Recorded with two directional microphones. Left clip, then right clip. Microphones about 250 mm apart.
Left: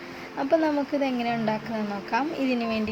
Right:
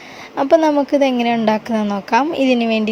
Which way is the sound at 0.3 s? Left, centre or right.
Right.